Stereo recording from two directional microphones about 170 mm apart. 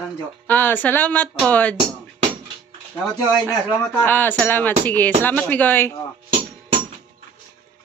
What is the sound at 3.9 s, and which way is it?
A woman's voice, 10° left (ahead or behind).